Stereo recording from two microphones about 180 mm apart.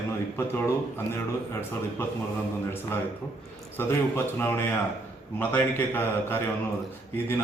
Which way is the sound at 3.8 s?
15° left (ahead or behind).